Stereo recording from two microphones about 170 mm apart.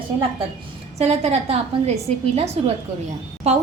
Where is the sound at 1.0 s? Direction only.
40° right (ahead or behind).